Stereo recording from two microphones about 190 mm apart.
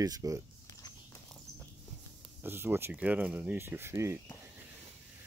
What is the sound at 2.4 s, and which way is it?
Speech, 10° right (ahead or behind).